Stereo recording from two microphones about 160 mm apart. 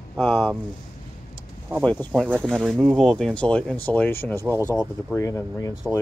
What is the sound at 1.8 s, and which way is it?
Speech, 10° left (ahead or behind).